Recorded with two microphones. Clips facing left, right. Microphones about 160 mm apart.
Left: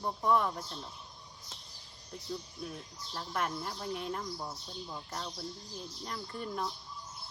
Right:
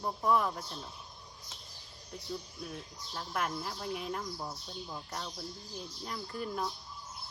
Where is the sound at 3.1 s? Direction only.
Centre (ahead or behind).